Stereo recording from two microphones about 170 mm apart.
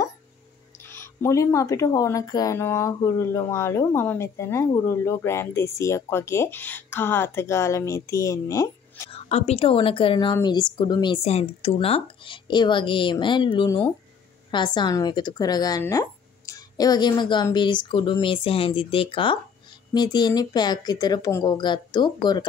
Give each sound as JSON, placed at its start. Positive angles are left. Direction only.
{"t": 0.8, "sound": "speech", "side_deg": 15}
{"t": 9.1, "sound": "a woman's voice", "side_deg": 35}
{"t": 11.2, "sound": "speech", "side_deg": 40}